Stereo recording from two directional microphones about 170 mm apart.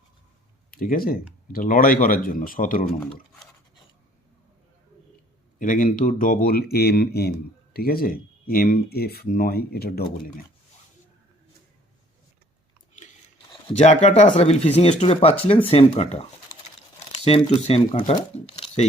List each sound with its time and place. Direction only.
0.7 s speech: 60° left (ahead or behind)
5.5 s speech: 50° left (ahead or behind)
13.7 s speech: 40° left (ahead or behind)
17.2 s speech: 35° left (ahead or behind)